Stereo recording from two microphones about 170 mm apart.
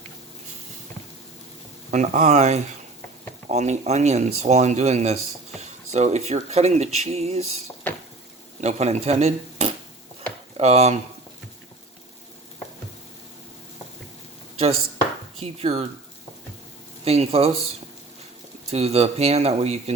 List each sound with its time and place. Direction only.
1.9 s speech: 45° right (ahead or behind)
8.6 s speech: 40° right (ahead or behind)
15.4 s speech: 40° right (ahead or behind)
17.0 s speech: 35° right (ahead or behind)
18.7 s speech: 40° right (ahead or behind)